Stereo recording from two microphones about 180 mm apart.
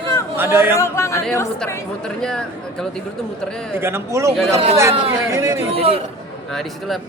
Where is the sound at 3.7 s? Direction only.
15° right (ahead or behind).